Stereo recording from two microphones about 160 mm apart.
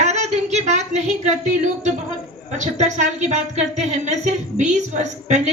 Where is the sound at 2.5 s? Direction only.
45° right (ahead or behind).